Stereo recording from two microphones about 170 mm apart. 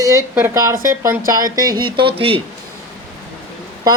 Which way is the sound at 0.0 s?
15° right (ahead or behind).